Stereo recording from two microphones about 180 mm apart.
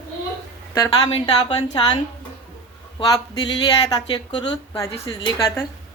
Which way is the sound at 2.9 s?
25° left (ahead or behind).